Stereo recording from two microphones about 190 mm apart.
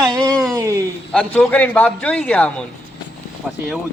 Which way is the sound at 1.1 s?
5° left (ahead or behind).